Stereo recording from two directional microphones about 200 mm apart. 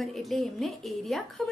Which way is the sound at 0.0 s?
Centre (ahead or behind).